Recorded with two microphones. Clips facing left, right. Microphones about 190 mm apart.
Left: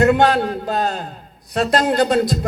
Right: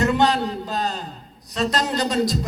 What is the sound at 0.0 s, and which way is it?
A man's voice, 55° left (ahead or behind).